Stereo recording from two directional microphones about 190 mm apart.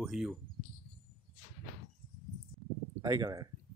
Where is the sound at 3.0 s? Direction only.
20° right (ahead or behind).